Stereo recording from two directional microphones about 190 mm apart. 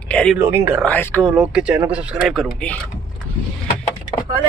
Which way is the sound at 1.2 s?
5° right (ahead or behind).